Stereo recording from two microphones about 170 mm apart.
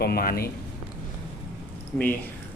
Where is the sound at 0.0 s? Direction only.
65° left (ahead or behind).